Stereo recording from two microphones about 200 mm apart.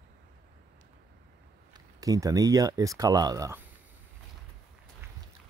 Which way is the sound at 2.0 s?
15° right (ahead or behind).